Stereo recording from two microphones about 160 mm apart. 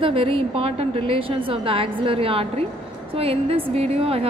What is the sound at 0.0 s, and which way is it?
A woman's voice, 35° right (ahead or behind).